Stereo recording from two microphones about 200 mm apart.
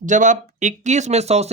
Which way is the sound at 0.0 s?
40° right (ahead or behind).